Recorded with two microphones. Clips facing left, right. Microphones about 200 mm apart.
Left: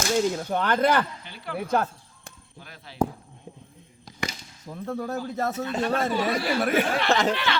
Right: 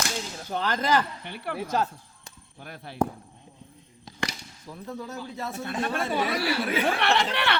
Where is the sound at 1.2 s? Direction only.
60° right (ahead or behind).